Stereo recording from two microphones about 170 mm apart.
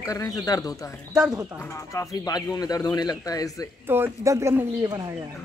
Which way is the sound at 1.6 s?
15° left (ahead or behind).